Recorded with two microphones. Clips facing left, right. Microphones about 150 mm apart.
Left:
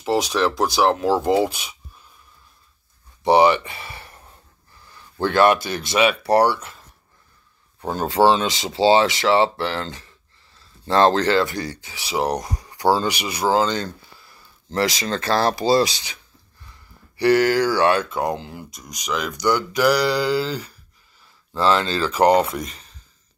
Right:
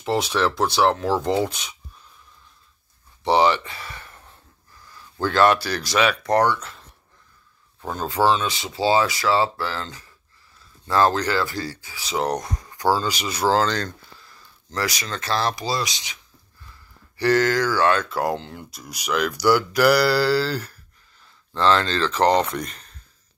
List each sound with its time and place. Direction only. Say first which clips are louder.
0.0 s speech: left 2 dB; centre (ahead or behind)
0.9 s speech: left 3 dB; 15° left (ahead or behind)
3.3 s speech: left 3 dB; 15° left (ahead or behind)
5.2 s speech: left 2 dB; 15° left (ahead or behind)
7.8 s speech: left 4 dB; 30° left (ahead or behind)
12.3 s speech: left 1 dB; 35° left (ahead or behind)
12.5 s speech: left 4 dB; 15° left (ahead or behind)
14.7 s speech: left 6 dB; 25° left (ahead or behind)
17.2 s speech: left 3 dB; 10° left (ahead or behind)
18.1 s speech: even; centre (ahead or behind)